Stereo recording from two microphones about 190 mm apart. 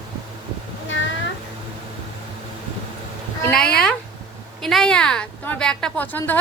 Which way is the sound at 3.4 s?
5° left (ahead or behind).